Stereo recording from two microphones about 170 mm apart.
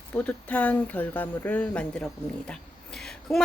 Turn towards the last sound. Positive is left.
turn(degrees=5)  # may be behind; listen again after turning